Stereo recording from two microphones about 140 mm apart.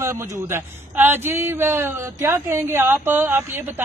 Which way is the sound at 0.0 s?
20° right (ahead or behind).